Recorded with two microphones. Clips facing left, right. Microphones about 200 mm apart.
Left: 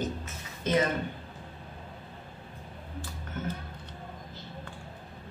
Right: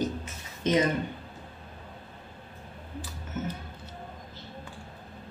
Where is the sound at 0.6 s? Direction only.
20° right (ahead or behind).